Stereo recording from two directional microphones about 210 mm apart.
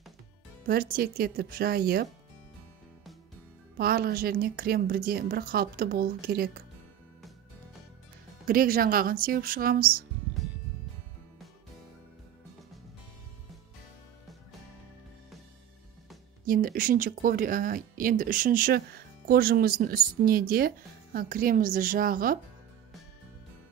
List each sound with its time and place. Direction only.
0.7 s speech: 45° right (ahead or behind)
3.7 s speech: 45° right (ahead or behind)
8.5 s speech: 45° right (ahead or behind)
16.4 s speech: 45° right (ahead or behind)